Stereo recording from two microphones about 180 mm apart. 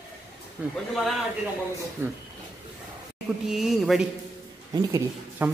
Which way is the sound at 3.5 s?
Centre (ahead or behind).